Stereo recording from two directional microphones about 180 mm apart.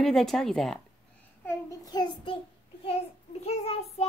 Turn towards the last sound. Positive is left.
turn(degrees=35)  # may be behind; listen again after turning